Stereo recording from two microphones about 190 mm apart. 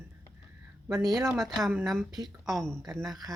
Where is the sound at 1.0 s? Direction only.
Centre (ahead or behind).